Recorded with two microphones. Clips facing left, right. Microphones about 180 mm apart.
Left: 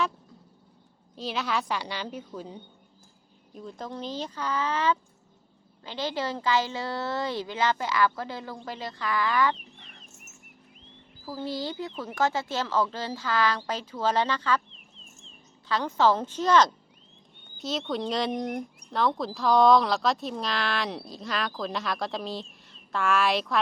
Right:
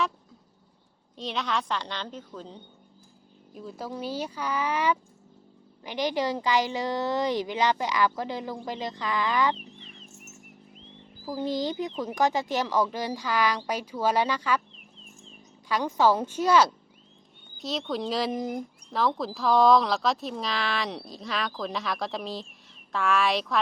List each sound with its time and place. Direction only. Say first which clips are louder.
1.1 s a woman's voice: even; 5° left (ahead or behind)
3.5 s a woman's voice: right 1 dB; 5° right (ahead or behind)
9.7 s a sound: right 4 dB; 65° left (ahead or behind)
11.3 s a woman's voice: right 4 dB; 20° right (ahead or behind)
15.7 s a woman's voice: right 1 dB; 10° right (ahead or behind)